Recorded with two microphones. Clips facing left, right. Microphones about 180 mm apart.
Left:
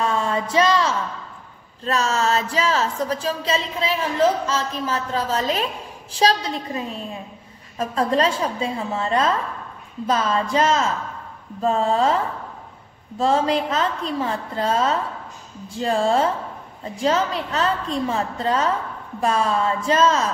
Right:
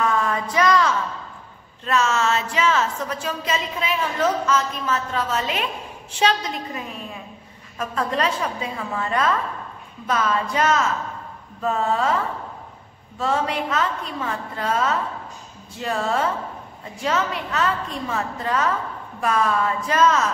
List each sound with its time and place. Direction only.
0.0 s a sound: 25° left (ahead or behind)
1.9 s a woman's voice: 35° left (ahead or behind)
13.2 s a woman's voice: 30° left (ahead or behind)